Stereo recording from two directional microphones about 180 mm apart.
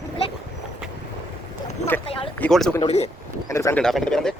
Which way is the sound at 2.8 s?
35° left (ahead or behind).